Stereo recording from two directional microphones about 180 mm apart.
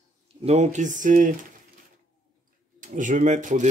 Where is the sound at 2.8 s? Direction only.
45° right (ahead or behind).